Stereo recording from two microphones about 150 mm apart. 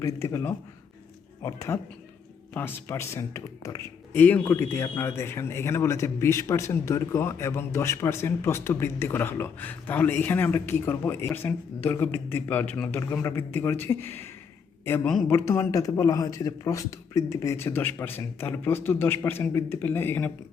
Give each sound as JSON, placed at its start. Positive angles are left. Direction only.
{"t": 0.0, "sound": "speech", "side_deg": 20}